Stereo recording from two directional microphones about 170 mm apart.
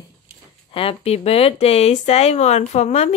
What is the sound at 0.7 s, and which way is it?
Speech, 30° left (ahead or behind).